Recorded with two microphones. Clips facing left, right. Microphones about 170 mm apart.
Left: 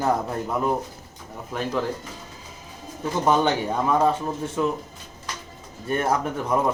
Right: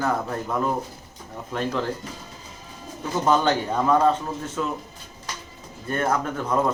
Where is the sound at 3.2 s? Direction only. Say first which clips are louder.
Even; 10° left (ahead or behind).